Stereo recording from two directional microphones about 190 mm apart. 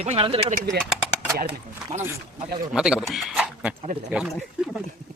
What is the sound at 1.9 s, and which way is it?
Speech, 40° right (ahead or behind).